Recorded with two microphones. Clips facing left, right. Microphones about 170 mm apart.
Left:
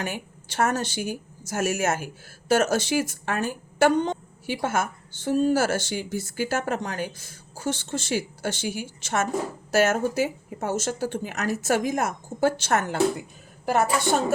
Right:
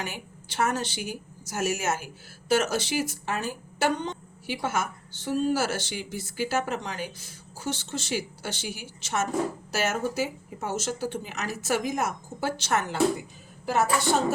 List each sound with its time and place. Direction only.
0.0 s speech: 50° left (ahead or behind)